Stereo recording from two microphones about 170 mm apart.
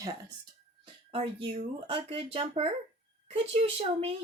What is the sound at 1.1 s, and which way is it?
Speech, 35° right (ahead or behind).